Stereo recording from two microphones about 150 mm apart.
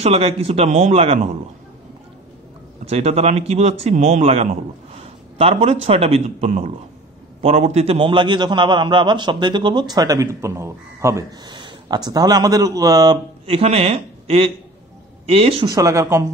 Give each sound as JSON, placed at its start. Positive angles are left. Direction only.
{"t": 0.0, "sound": "a man's voice", "side_deg": -40}
{"t": 2.8, "sound": "a man's voice", "side_deg": -45}
{"t": 4.2, "sound": "a man's voice", "side_deg": -45}
{"t": 13.6, "sound": "a man's voice", "side_deg": -40}
{"t": 15.6, "sound": "a man's voice", "side_deg": -25}